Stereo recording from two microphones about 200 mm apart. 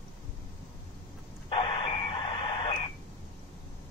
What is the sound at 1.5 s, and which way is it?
Radio, 25° left (ahead or behind).